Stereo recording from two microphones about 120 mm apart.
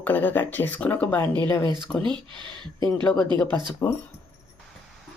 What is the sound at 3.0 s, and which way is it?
Speech, 10° left (ahead or behind).